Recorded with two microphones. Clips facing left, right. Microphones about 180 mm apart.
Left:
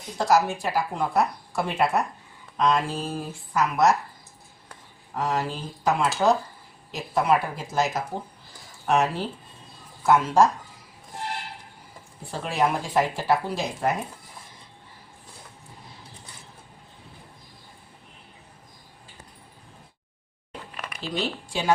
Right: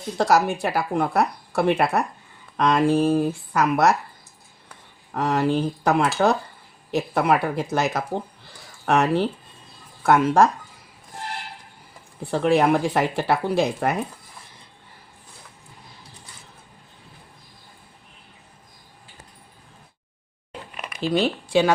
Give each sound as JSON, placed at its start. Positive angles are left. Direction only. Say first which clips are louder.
{"t": 0.2, "sound": "speech", "louder": "right 2 dB", "side_deg": -70}
{"t": 5.1, "sound": "speech", "louder": "right 6 dB", "side_deg": -65}
{"t": 12.3, "sound": "speech", "louder": "right 7 dB", "side_deg": -65}
{"t": 20.7, "sound": "a sound", "louder": "right 9 dB", "side_deg": -15}
{"t": 21.1, "sound": "speech", "louder": "right 9 dB", "side_deg": -65}